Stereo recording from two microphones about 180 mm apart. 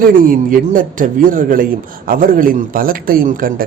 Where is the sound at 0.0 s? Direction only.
50° right (ahead or behind).